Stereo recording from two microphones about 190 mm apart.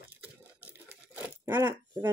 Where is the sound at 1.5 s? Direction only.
10° right (ahead or behind).